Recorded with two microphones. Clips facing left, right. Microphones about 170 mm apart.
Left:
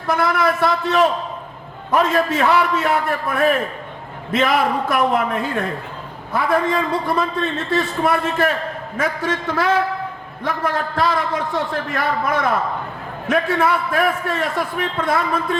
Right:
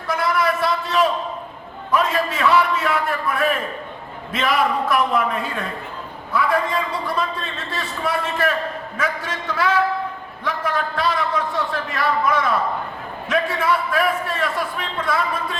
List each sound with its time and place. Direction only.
0.1 s a man's voice: 50° left (ahead or behind)